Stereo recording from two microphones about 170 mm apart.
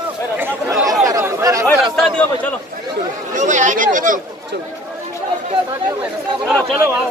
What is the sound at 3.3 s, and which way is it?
Chatter, 45° right (ahead or behind).